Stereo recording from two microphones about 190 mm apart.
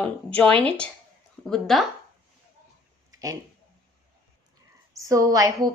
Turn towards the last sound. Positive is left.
turn(degrees=-20)  # may be behind; listen again after turning